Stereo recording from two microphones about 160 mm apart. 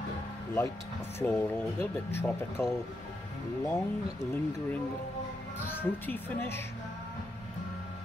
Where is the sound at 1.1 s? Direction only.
15° left (ahead or behind).